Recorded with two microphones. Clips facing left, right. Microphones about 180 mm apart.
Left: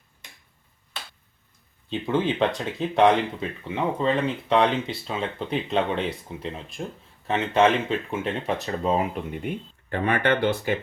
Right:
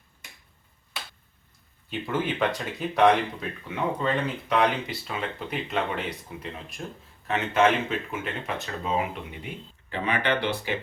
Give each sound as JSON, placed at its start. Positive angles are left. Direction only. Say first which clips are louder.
{"t": 1.9, "sound": "speech", "louder": "left 4 dB", "side_deg": 20}